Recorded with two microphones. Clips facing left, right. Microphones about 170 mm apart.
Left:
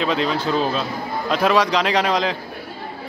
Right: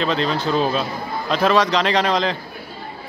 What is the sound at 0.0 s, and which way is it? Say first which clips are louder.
A man's voice: even; 5° left (ahead or behind).